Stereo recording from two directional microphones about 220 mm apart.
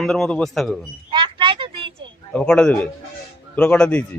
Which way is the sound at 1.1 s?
20° right (ahead or behind).